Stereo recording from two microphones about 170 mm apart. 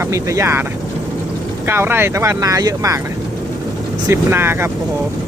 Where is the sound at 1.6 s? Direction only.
15° right (ahead or behind).